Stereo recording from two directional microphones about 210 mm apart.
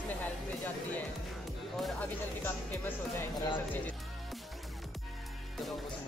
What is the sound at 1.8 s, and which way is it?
Music, 10° left (ahead or behind).